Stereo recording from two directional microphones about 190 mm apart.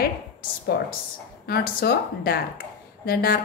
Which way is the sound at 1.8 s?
55° left (ahead or behind).